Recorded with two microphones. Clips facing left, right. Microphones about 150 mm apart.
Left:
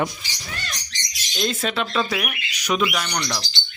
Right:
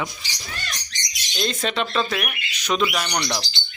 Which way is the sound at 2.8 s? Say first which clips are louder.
Right 1 dB; centre (ahead or behind).